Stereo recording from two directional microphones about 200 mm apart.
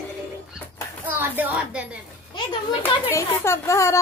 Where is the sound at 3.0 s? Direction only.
10° left (ahead or behind).